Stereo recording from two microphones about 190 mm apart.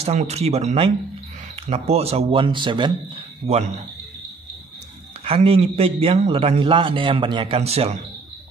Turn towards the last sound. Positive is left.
turn(degrees=-35)  # may be behind; listen again after turning